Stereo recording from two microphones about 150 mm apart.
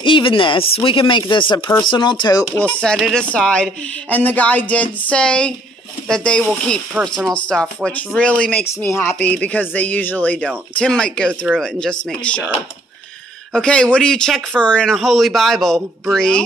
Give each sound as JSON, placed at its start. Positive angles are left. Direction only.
{"t": 0.0, "sound": "speech", "side_deg": 35}
{"t": 2.8, "sound": "a man's voice", "side_deg": 5}
{"t": 13.5, "sound": "a man's voice", "side_deg": 5}